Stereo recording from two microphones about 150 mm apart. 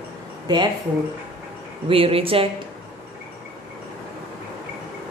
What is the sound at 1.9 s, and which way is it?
Speech, 40° right (ahead or behind).